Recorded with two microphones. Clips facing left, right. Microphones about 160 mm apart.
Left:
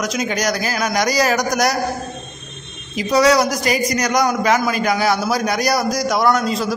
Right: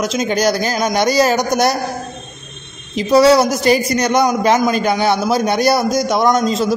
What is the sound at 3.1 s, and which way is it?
A man's voice, 30° right (ahead or behind).